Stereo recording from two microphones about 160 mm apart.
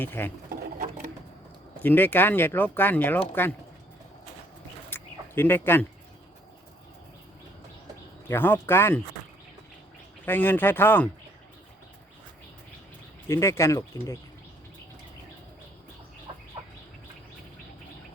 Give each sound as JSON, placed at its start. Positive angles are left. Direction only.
{"t": 0.0, "sound": "speech", "side_deg": 10}
{"t": 1.8, "sound": "speech", "side_deg": 10}
{"t": 4.9, "sound": "a sound", "side_deg": 15}
{"t": 8.3, "sound": "speech", "side_deg": 15}
{"t": 10.2, "sound": "speech", "side_deg": 10}
{"t": 13.2, "sound": "speech", "side_deg": 20}